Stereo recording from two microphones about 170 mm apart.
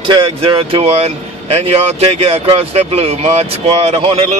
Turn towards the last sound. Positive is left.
turn(degrees=-35)  # may be behind; listen again after turning